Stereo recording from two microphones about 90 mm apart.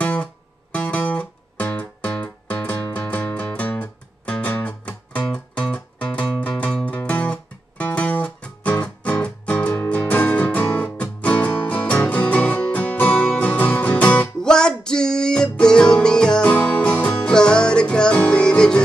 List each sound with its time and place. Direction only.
0.0 s music: 15° left (ahead or behind)